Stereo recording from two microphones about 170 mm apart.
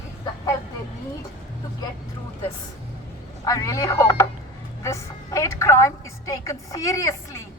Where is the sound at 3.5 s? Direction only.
20° left (ahead or behind).